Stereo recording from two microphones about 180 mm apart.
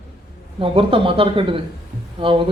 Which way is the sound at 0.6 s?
30° right (ahead or behind).